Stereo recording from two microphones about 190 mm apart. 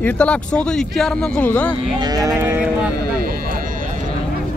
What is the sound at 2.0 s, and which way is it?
Cattle, 20° right (ahead or behind).